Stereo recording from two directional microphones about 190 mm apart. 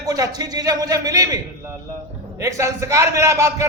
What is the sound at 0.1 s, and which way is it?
A man's voice, 20° right (ahead or behind).